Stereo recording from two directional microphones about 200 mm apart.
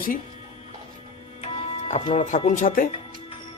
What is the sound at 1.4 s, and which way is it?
Speech, 30° left (ahead or behind).